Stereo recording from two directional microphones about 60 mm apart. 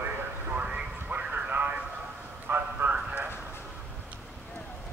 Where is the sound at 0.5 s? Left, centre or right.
Right.